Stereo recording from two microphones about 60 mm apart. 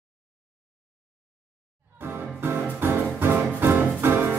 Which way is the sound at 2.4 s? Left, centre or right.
Right.